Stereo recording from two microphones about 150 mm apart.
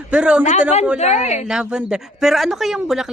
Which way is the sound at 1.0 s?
45° left (ahead or behind).